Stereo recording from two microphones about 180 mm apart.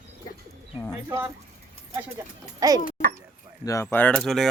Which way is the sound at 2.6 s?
20° right (ahead or behind).